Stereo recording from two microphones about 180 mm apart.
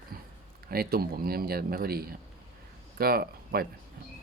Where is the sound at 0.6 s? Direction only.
55° right (ahead or behind).